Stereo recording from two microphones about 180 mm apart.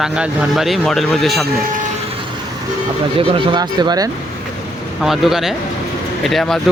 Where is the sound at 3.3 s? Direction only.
25° right (ahead or behind).